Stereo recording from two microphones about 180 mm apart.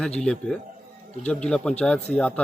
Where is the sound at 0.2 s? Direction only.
5° left (ahead or behind).